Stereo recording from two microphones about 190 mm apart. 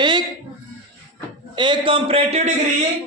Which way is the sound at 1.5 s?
25° right (ahead or behind).